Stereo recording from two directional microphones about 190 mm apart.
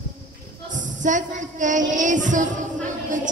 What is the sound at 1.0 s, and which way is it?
Child singing, 40° right (ahead or behind).